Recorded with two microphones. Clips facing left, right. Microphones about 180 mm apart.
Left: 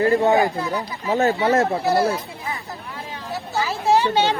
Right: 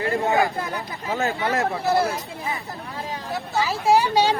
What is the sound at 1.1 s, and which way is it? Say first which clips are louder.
Speech: left 6 dB; 40° left (ahead or behind).